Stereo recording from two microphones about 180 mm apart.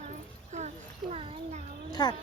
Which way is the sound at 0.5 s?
35° right (ahead or behind).